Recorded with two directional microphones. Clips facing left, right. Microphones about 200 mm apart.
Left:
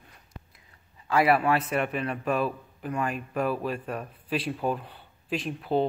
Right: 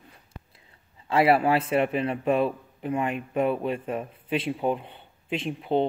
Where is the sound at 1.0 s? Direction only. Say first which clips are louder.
Right 2 dB; 25° right (ahead or behind).